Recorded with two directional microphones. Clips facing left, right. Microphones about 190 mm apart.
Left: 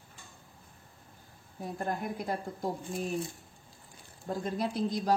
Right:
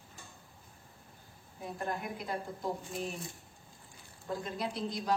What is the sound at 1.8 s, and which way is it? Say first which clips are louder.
Speech: left 3 dB; 45° left (ahead or behind).